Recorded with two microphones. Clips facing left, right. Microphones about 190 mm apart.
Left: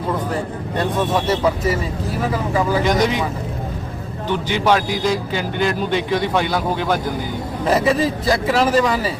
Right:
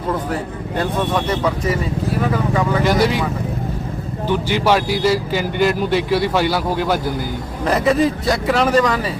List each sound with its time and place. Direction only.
0.8 s speech: centre (ahead or behind)
4.3 s a man's voice: 10° right (ahead or behind)